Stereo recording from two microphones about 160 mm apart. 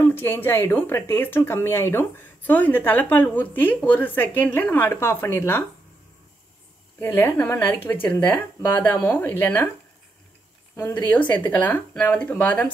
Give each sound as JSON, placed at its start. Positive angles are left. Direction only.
{"t": 0.0, "sound": "speech", "side_deg": 15}
{"t": 7.0, "sound": "speech", "side_deg": 10}
{"t": 10.8, "sound": "speech", "side_deg": 10}